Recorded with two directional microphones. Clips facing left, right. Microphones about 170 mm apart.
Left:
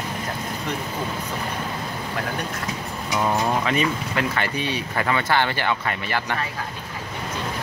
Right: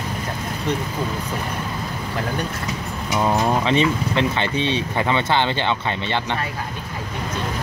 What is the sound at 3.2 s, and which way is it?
Speech, 25° right (ahead or behind).